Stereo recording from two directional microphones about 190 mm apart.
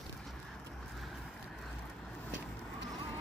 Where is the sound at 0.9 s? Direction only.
Centre (ahead or behind).